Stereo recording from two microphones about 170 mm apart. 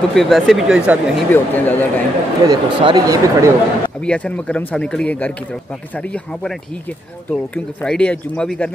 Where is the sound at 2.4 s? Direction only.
25° right (ahead or behind).